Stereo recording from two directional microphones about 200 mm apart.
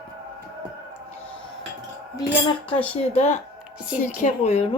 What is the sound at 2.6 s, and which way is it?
Speech, 30° left (ahead or behind).